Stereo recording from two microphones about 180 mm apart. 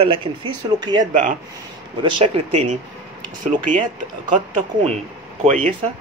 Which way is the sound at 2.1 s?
35° right (ahead or behind).